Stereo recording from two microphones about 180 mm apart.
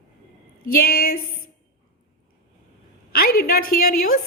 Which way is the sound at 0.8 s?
60° left (ahead or behind).